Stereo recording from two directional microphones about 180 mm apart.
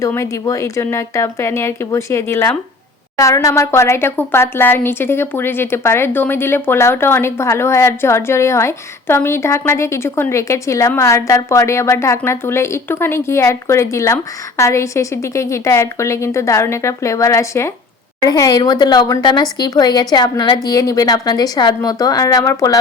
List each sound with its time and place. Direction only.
0.0 s a woman's voice: 15° left (ahead or behind)